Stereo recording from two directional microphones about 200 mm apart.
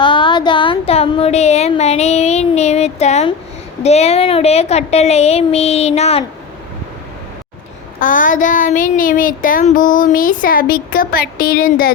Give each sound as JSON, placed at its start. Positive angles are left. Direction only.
{"t": 0.0, "sound": "a woman's voice", "side_deg": 25}
{"t": 7.9, "sound": "speech", "side_deg": 40}